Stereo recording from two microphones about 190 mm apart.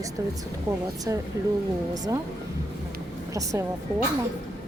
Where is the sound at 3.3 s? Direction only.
15° right (ahead or behind).